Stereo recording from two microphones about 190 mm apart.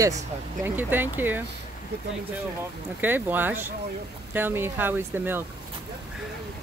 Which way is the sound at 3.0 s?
10° right (ahead or behind).